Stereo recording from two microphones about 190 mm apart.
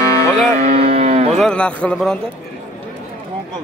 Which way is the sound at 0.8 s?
30° right (ahead or behind).